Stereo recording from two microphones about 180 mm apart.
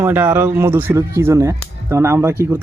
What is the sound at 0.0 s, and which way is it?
Speech, 10° right (ahead or behind).